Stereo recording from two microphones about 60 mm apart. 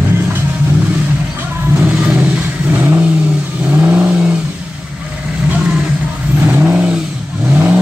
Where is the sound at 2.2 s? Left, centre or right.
Right.